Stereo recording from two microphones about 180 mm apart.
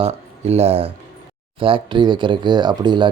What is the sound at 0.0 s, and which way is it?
Speech, 35° right (ahead or behind).